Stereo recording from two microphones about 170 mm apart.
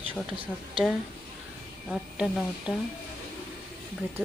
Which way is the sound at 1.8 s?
Centre (ahead or behind).